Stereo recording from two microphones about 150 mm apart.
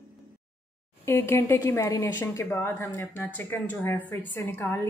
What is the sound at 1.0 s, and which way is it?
A woman's voice, 15° left (ahead or behind).